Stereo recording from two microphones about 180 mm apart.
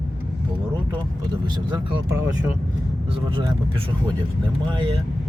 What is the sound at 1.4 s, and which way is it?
Speech, 25° right (ahead or behind).